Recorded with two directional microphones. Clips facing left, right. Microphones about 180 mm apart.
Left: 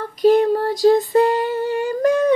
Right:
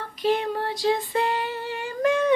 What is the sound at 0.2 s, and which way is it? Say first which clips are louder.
Female singing: left 10 dB; 40° left (ahead or behind).